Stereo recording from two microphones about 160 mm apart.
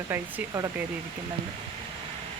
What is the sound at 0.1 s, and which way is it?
Speech, 20° right (ahead or behind).